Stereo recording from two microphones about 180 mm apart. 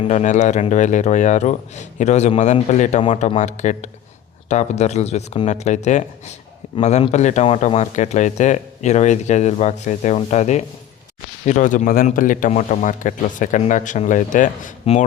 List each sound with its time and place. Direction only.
0.0 s a man's voice: 40° left (ahead or behind)